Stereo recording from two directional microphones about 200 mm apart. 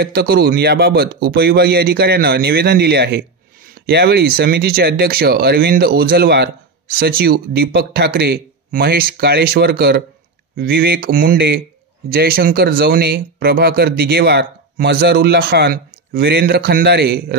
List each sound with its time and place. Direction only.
0.0 s speech: 50° right (ahead or behind)